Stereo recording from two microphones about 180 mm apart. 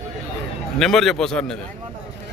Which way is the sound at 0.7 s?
Centre (ahead or behind).